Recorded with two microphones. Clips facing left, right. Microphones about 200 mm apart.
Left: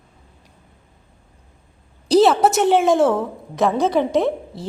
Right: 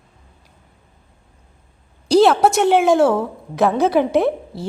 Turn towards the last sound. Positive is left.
turn(degrees=-5)  # may be behind; listen again after turning